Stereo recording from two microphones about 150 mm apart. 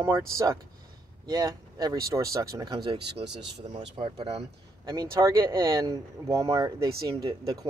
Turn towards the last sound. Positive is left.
turn(degrees=-25)  # may be behind; listen again after turning